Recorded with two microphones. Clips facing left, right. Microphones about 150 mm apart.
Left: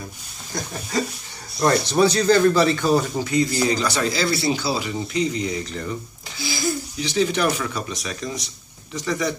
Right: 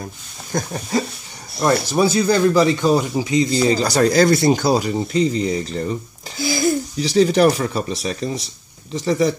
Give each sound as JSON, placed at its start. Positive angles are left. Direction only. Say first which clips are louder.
{"t": 0.5, "sound": "speech", "louder": "right 7 dB", "side_deg": -45}
{"t": 1.6, "sound": "speech", "louder": "right 1 dB", "side_deg": -10}
{"t": 7.1, "sound": "speech", "louder": "right 7 dB", "side_deg": -40}